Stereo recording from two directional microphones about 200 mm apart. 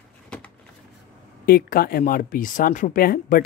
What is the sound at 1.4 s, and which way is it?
Speech, 50° left (ahead or behind).